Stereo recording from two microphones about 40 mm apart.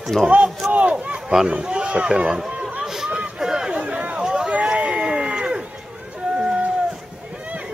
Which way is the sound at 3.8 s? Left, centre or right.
Right.